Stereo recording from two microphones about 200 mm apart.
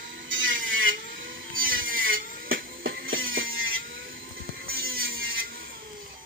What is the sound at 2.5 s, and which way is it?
Music, 50° right (ahead or behind).